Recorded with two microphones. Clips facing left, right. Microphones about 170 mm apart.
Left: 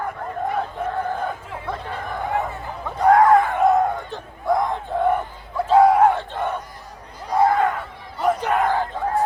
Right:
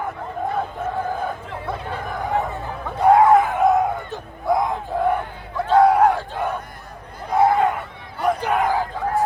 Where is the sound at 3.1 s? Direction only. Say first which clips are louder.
Right 1 dB; 10° right (ahead or behind).